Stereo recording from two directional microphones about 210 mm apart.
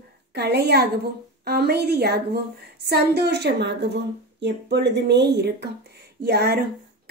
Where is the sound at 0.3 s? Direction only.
50° right (ahead or behind).